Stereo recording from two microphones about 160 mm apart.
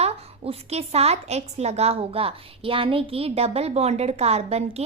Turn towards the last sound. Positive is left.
turn(degrees=-40)  # may be behind; listen again after turning